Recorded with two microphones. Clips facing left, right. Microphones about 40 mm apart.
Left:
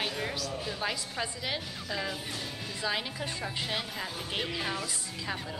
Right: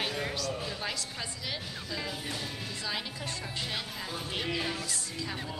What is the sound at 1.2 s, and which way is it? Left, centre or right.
Speech, centre.